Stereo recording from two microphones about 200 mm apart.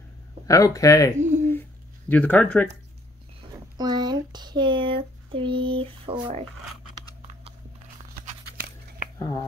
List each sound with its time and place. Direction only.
0.5 s speech: 15° left (ahead or behind)
1.1 s speech: 35° right (ahead or behind)
2.0 s speech: 5° left (ahead or behind)
3.7 s a sound: 20° right (ahead or behind)
9.2 s speech: 20° left (ahead or behind)